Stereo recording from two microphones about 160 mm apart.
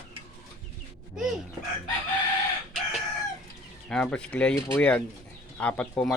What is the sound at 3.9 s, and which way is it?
Speech, 5° left (ahead or behind).